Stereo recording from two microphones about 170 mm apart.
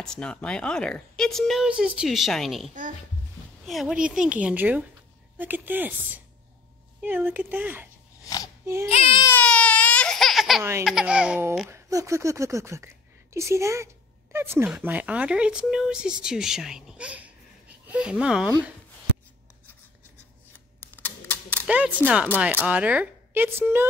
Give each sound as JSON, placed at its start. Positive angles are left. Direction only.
{"t": 0.0, "sound": "speech", "side_deg": 5}
{"t": 8.2, "sound": "a sound", "side_deg": 20}
{"t": 8.8, "sound": "speech", "side_deg": 35}
{"t": 9.2, "sound": "baby cry", "side_deg": 10}
{"t": 10.8, "sound": "speech", "side_deg": -5}
{"t": 20.8, "sound": "typewriter", "side_deg": 10}
{"t": 21.5, "sound": "speech", "side_deg": -5}